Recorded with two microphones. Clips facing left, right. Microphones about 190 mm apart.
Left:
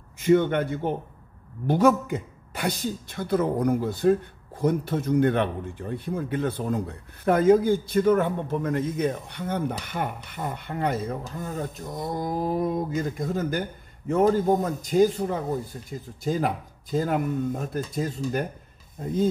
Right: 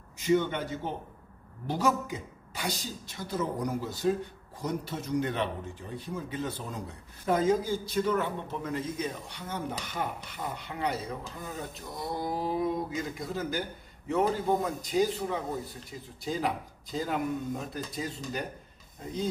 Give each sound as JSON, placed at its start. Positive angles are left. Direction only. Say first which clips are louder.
{"t": 0.2, "sound": "speech", "louder": "left 6 dB", "side_deg": 60}